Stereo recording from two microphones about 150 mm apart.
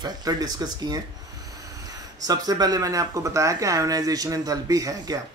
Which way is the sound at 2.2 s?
25° right (ahead or behind).